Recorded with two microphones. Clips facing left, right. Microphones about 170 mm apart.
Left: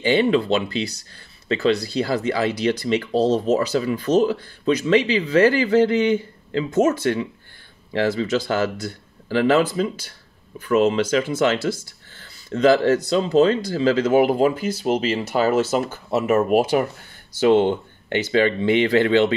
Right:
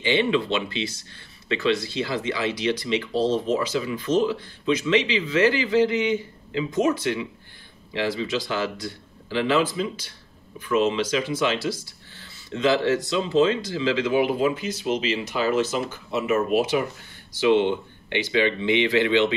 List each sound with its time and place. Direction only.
0.0 s speech: 45° left (ahead or behind)